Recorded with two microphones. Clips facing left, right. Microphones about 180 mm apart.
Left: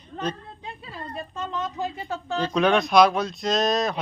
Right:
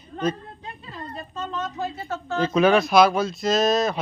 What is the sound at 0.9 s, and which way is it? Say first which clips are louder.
Speech: left 1 dB; 15° left (ahead or behind).